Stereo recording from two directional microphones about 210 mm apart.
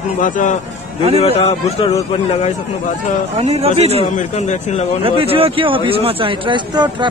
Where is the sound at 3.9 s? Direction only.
35° left (ahead or behind).